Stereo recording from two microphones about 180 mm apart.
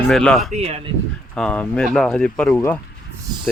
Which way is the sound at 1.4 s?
5° left (ahead or behind).